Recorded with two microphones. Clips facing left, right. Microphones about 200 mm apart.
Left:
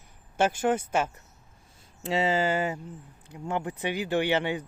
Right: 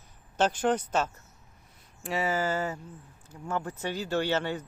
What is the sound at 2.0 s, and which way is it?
Speech, 20° left (ahead or behind).